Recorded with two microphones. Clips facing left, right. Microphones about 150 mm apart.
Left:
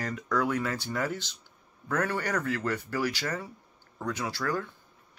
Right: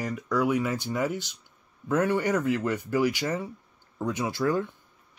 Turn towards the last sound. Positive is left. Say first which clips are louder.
# right 5 dB
turn(degrees=-20)  # may be behind; listen again after turning